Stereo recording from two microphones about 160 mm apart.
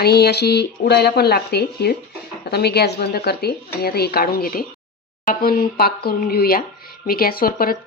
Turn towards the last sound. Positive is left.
turn(degrees=65)  # may be behind; listen again after turning